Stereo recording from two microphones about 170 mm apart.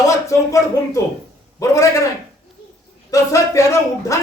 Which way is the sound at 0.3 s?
20° left (ahead or behind).